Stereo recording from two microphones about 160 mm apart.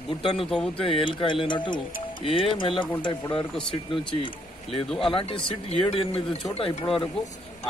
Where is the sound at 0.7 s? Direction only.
35° left (ahead or behind).